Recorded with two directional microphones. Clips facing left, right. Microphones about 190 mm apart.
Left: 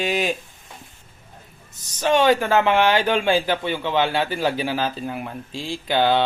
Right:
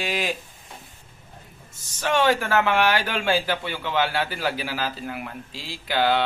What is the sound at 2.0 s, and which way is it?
Speech, 20° left (ahead or behind).